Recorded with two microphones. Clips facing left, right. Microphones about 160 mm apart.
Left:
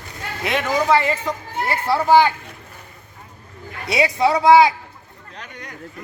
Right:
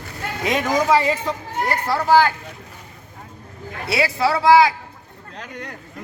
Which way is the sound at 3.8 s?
20° left (ahead or behind).